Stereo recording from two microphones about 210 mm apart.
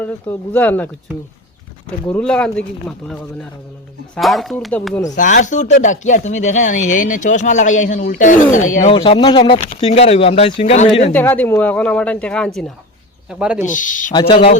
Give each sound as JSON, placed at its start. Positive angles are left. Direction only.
{"t": 0.0, "sound": "speech", "side_deg": 10}
{"t": 5.1, "sound": "speech", "side_deg": 35}
{"t": 11.1, "sound": "speech", "side_deg": 10}
{"t": 13.4, "sound": "speech", "side_deg": -5}
{"t": 13.7, "sound": "speech", "side_deg": 40}
{"t": 14.1, "sound": "speech", "side_deg": 20}